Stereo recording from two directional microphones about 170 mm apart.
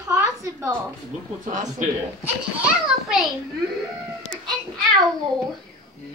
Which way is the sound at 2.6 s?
Centre (ahead or behind).